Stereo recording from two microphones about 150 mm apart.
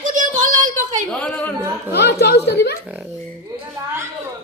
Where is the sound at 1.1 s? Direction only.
10° left (ahead or behind).